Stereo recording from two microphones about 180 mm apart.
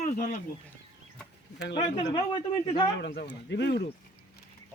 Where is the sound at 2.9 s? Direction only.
65° left (ahead or behind).